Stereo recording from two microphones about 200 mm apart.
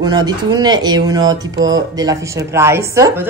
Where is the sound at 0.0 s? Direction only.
20° right (ahead or behind).